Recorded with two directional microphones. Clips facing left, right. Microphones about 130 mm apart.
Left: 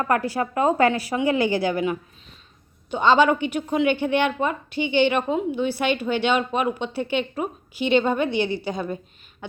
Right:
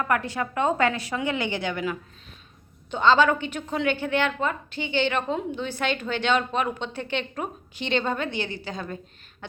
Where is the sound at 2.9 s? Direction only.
15° left (ahead or behind).